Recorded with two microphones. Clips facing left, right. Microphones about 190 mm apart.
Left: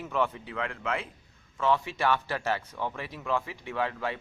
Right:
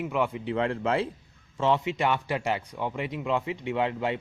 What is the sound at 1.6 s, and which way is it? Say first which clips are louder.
Speech: right 2 dB; 20° right (ahead or behind).